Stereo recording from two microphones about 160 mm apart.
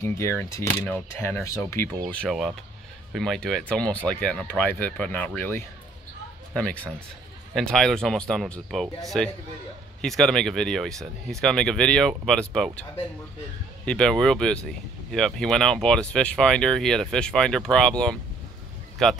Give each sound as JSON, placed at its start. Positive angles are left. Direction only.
{"t": 0.4, "sound": "speech", "side_deg": 20}
{"t": 13.8, "sound": "speech", "side_deg": 5}